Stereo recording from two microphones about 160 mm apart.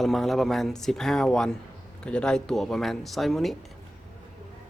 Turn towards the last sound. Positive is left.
turn(degrees=0)  # may be behind; listen again after turning